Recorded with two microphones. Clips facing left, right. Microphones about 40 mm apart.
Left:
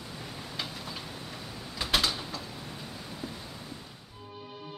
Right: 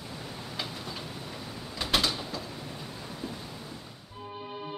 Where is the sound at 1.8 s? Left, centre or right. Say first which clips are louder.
Even; centre.